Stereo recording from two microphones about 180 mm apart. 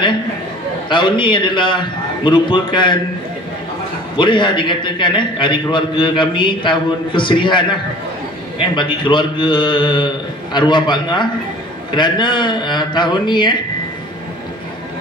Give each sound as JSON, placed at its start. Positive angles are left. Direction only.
{"t": 0.8, "sound": "a man's voice", "side_deg": 25}
{"t": 4.2, "sound": "a man's voice", "side_deg": 25}